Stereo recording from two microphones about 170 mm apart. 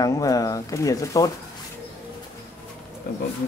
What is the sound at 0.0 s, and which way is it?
Speech, 20° left (ahead or behind).